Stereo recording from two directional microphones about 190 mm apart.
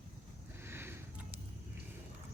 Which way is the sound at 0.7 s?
10° right (ahead or behind).